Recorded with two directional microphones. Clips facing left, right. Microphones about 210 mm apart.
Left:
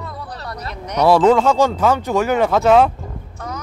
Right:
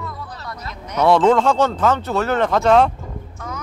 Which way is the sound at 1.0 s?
10° left (ahead or behind).